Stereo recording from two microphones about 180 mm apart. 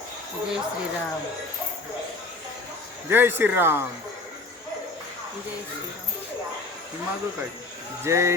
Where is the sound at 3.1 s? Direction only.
10° right (ahead or behind).